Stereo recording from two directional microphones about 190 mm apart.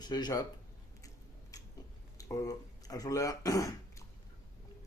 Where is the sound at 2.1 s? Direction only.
20° left (ahead or behind).